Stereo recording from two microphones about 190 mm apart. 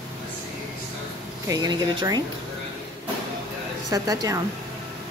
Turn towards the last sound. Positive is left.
turn(degrees=-20)  # may be behind; listen again after turning